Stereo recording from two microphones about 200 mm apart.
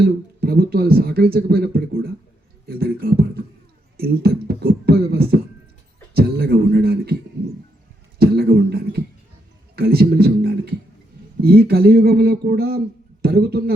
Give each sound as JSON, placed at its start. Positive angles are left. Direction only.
{"t": 0.0, "sound": "speech", "side_deg": -50}
{"t": 8.2, "sound": "beatboxing", "side_deg": -50}
{"t": 9.7, "sound": "music", "side_deg": -50}
{"t": 11.4, "sound": "speech", "side_deg": -50}